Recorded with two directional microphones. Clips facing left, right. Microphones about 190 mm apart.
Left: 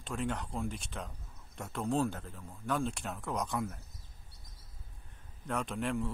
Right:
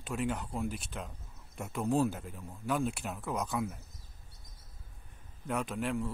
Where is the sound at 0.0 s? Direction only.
5° right (ahead or behind).